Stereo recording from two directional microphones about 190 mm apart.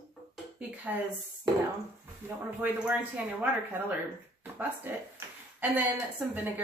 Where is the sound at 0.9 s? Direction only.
10° right (ahead or behind).